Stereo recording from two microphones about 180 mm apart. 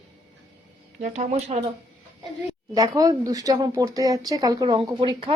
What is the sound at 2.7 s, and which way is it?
Speech, 20° right (ahead or behind).